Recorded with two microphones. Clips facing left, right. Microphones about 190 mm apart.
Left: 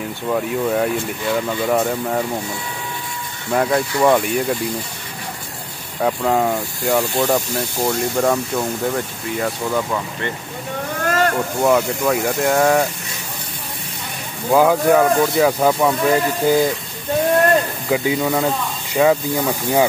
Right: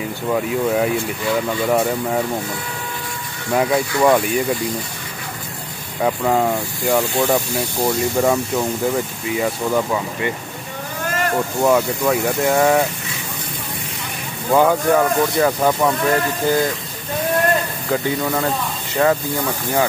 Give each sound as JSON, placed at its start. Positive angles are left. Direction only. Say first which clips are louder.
{"t": 0.0, "sound": "speech", "louder": "right 1 dB", "side_deg": 0}
{"t": 3.5, "sound": "speech", "louder": "even", "side_deg": 0}
{"t": 5.9, "sound": "speech", "louder": "even", "side_deg": 0}
{"t": 11.1, "sound": "a sound", "louder": "left 4 dB", "side_deg": 70}
{"t": 11.6, "sound": "speech", "louder": "even", "side_deg": 0}
{"t": 14.5, "sound": "speech", "louder": "left 1 dB", "side_deg": 5}
{"t": 17.8, "sound": "speech", "louder": "left 2 dB", "side_deg": 10}